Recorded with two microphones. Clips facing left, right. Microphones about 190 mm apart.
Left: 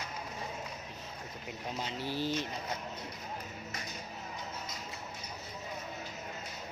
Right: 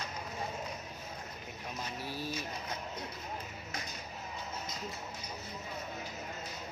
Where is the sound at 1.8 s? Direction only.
25° left (ahead or behind).